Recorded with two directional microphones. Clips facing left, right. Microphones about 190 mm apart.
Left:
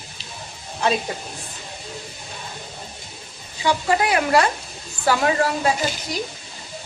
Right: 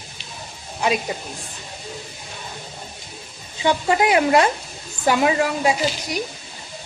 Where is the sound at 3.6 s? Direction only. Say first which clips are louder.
Right 2 dB; 20° right (ahead or behind).